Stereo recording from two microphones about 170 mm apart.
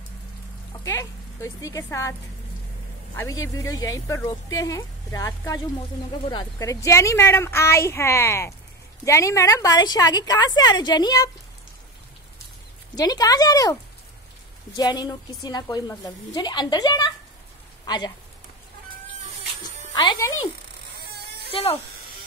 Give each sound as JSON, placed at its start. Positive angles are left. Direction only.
{"t": 0.8, "sound": "speech", "side_deg": 20}
{"t": 3.2, "sound": "speech", "side_deg": 20}
{"t": 12.9, "sound": "speech", "side_deg": 20}
{"t": 14.8, "sound": "speech", "side_deg": 25}
{"t": 19.9, "sound": "speech", "side_deg": 25}
{"t": 21.5, "sound": "speech", "side_deg": 35}